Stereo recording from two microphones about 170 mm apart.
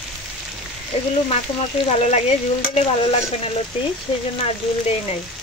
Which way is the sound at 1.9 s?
40° left (ahead or behind).